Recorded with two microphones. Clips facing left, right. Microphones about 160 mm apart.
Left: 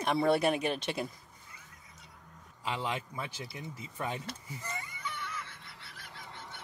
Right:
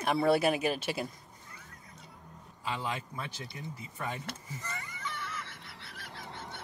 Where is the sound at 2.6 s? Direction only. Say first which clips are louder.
Left 1 dB; 20° left (ahead or behind).